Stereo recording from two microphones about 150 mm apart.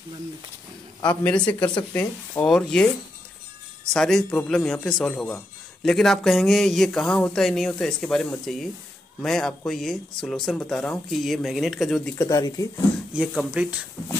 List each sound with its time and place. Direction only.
1.0 s speech: 10° left (ahead or behind)
3.9 s speech: 5° left (ahead or behind)
12.2 s speech: 25° left (ahead or behind)
13.1 s speech: 5° right (ahead or behind)